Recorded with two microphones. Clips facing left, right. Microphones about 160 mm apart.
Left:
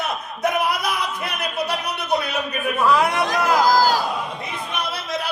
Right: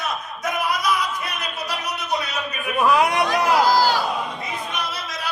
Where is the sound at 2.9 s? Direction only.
15° right (ahead or behind).